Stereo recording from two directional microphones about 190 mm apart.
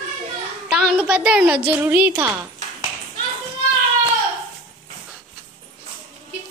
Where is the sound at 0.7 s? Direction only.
Centre (ahead or behind).